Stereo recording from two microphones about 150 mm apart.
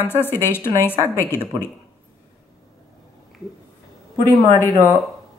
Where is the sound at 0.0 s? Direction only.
15° left (ahead or behind).